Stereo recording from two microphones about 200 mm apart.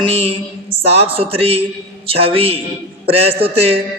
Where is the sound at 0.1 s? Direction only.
30° right (ahead or behind).